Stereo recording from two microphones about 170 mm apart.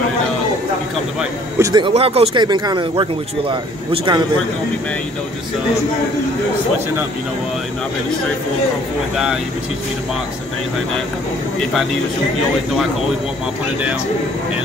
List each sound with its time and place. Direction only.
1.6 s speech: 25° right (ahead or behind)
2.0 s speech: 35° right (ahead or behind)
2.4 s speech: 25° right (ahead or behind)